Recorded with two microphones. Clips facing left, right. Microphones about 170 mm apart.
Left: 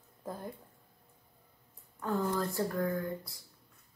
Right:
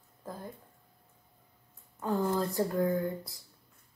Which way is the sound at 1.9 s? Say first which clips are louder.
Right 2 dB; 20° right (ahead or behind).